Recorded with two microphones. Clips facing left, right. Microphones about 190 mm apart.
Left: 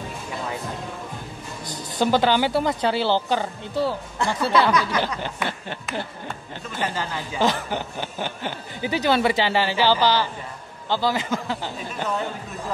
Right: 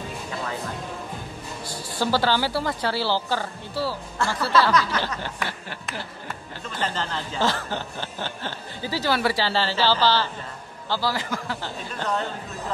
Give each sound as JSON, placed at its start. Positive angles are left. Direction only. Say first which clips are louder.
{"t": 1.7, "sound": "a woman's voice", "louder": "left 4 dB", "side_deg": 20}
{"t": 6.8, "sound": "a woman's voice", "louder": "left 1 dB", "side_deg": 10}
{"t": 11.9, "sound": "speech", "louder": "even", "side_deg": 10}